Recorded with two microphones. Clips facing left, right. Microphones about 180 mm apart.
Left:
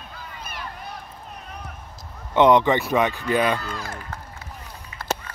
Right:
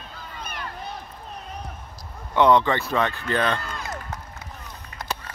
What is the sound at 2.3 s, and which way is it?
Speech, 20° left (ahead or behind).